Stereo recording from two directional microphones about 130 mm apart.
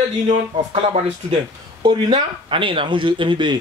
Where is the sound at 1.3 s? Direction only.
35° right (ahead or behind).